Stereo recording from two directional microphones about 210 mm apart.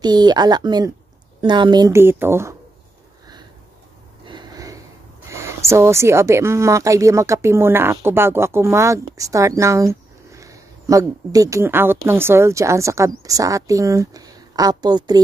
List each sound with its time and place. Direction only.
0.0 s a woman's voice: 20° right (ahead or behind)
4.3 s a sound: 20° right (ahead or behind)
5.3 s a woman's voice: 15° right (ahead or behind)